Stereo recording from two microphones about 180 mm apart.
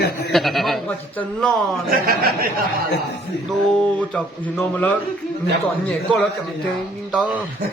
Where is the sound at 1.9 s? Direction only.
55° right (ahead or behind).